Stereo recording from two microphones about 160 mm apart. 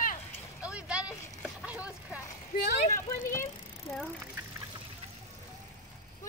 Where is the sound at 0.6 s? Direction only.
5° right (ahead or behind).